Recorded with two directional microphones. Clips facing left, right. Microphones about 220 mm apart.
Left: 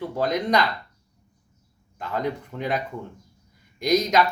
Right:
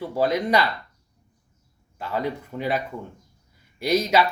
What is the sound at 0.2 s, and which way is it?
Speech, 10° right (ahead or behind).